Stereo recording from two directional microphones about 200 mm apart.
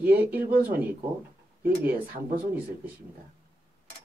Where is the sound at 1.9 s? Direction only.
45° right (ahead or behind).